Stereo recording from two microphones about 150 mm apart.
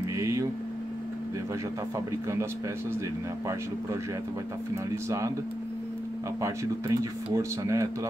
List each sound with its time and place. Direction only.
0.1 s vehicle: 20° right (ahead or behind)
6.4 s speech: 20° right (ahead or behind)